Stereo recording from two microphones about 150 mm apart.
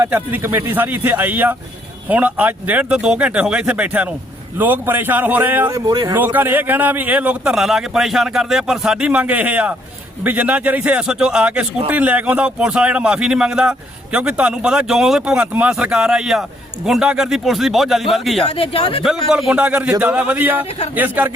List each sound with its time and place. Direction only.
0.0 s a man's voice: 10° right (ahead or behind); by 6.1 s 25° right (ahead or behind)
6.1 s a man's voice: 15° right (ahead or behind)
18.4 s speech: 40° left (ahead or behind)
19.0 s a man's voice: 5° right (ahead or behind)